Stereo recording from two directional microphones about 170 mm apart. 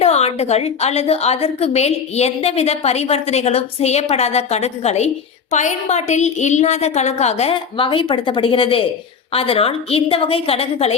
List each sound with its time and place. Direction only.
0.0 s a woman's voice: 40° left (ahead or behind)